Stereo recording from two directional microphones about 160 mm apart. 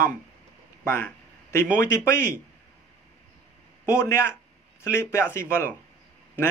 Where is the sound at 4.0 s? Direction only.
15° left (ahead or behind).